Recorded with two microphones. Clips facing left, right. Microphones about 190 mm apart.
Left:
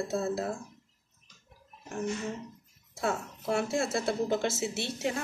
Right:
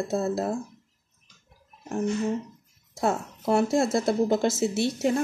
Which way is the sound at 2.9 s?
40° right (ahead or behind).